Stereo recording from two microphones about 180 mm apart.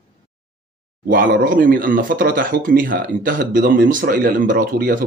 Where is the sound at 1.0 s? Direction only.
55° right (ahead or behind).